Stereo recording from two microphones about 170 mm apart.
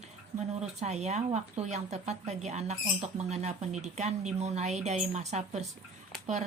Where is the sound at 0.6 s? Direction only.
40° right (ahead or behind).